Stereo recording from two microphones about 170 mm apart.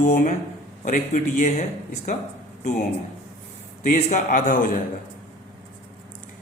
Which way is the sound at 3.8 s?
45° left (ahead or behind).